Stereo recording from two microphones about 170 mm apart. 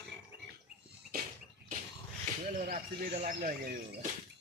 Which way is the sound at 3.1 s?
45° right (ahead or behind).